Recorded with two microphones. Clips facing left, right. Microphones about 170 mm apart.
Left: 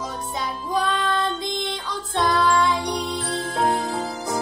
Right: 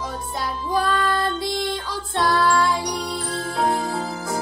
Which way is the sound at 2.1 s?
Centre (ahead or behind).